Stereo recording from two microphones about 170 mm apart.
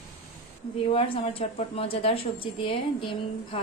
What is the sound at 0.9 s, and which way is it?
A woman's voice, 35° left (ahead or behind).